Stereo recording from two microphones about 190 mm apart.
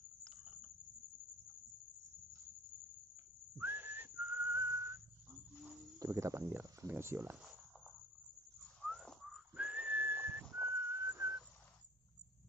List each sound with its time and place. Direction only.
3.5 s whistling: 10° right (ahead or behind)
5.9 s speech: 15° right (ahead or behind)
8.8 s whistling: centre (ahead or behind)